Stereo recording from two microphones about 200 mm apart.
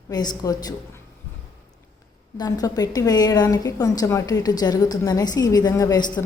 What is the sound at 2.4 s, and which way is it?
A woman's voice, 20° left (ahead or behind).